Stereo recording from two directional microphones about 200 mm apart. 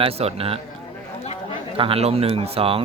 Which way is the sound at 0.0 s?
30° right (ahead or behind).